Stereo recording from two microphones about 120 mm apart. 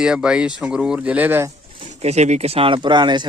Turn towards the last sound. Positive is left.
turn(degrees=-40)  # may be behind; listen again after turning